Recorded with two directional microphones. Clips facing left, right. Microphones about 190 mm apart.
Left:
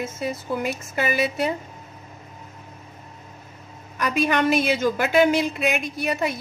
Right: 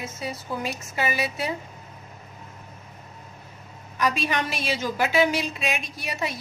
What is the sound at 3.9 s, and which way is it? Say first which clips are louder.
A woman's voice: left 3 dB; 50° left (ahead or behind).